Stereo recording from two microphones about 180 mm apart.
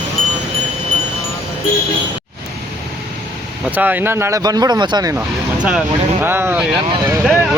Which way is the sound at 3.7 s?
10° right (ahead or behind).